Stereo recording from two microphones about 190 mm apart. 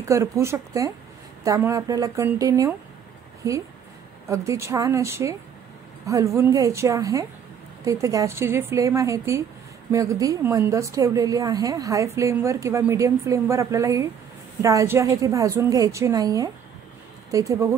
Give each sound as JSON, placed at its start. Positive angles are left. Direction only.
{"t": 0.1, "sound": "a woman's voice", "side_deg": -15}
{"t": 4.3, "sound": "a woman's voice", "side_deg": -15}